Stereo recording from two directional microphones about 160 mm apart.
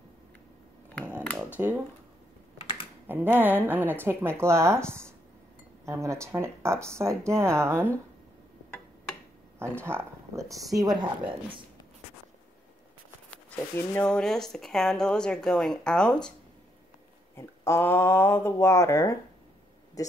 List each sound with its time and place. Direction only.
1.2 s a sound: 10° left (ahead or behind)
3.1 s speech: 10° right (ahead or behind)
9.6 s speech: 15° right (ahead or behind)
13.3 s speech: 10° left (ahead or behind)
17.4 s speech: 15° left (ahead or behind)